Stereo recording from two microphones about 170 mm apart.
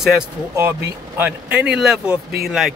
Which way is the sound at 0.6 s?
15° right (ahead or behind).